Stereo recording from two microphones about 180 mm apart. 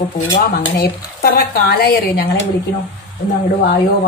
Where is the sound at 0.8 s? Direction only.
55° left (ahead or behind).